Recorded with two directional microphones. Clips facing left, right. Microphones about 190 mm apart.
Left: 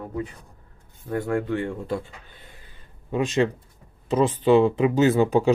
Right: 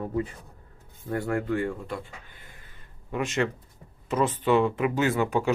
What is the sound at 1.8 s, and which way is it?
Speech, 25° left (ahead or behind).